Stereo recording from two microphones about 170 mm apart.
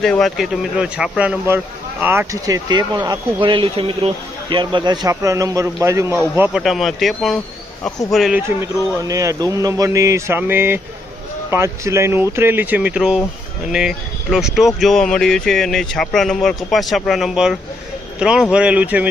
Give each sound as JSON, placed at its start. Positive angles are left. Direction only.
{"t": 0.0, "sound": "a man's voice", "side_deg": 0}
{"t": 6.6, "sound": "speech", "side_deg": 0}
{"t": 9.0, "sound": "a man's voice", "side_deg": -20}